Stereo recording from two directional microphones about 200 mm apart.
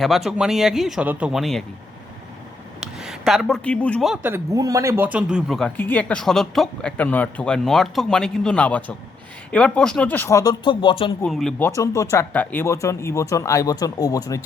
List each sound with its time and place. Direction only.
0.3 s speech: 5° right (ahead or behind)
2.8 s speech: centre (ahead or behind); by 11.1 s 25° left (ahead or behind)
11.2 s speech: centre (ahead or behind)
11.7 s speech: 15° left (ahead or behind)